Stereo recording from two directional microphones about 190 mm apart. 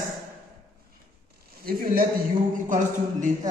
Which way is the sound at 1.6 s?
50° right (ahead or behind).